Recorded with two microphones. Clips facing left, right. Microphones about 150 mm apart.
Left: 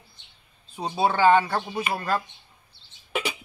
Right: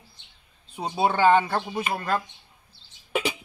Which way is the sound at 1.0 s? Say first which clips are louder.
Even; 15° right (ahead or behind).